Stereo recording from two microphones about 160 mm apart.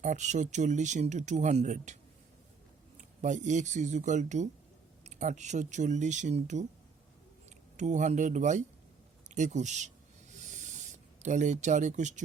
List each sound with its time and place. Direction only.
0.0 s speech: 50° right (ahead or behind)
3.0 s speech: 50° right (ahead or behind)
7.8 s speech: 50° right (ahead or behind)
9.3 s snake: 50° right (ahead or behind)